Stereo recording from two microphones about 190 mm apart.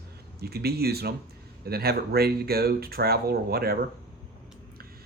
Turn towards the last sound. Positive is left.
turn(degrees=-55)  # may be behind; listen again after turning